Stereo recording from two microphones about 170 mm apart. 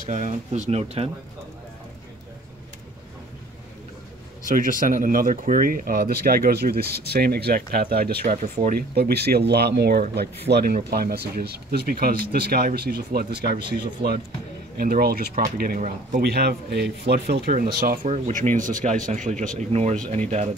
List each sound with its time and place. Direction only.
0.0 s speech: 45° right (ahead or behind)
4.5 s speech: 55° right (ahead or behind)
16.2 s speech: 70° right (ahead or behind); by 20.5 s 40° right (ahead or behind)